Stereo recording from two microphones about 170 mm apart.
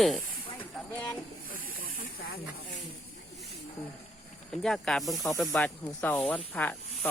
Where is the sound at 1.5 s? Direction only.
55° left (ahead or behind).